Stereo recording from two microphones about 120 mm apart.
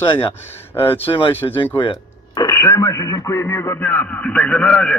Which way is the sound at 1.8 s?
40° left (ahead or behind).